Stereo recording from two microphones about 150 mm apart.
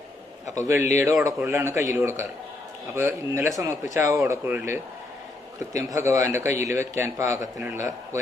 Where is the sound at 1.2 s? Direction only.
15° right (ahead or behind).